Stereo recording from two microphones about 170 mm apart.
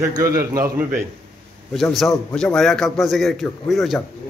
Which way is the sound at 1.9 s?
5° left (ahead or behind).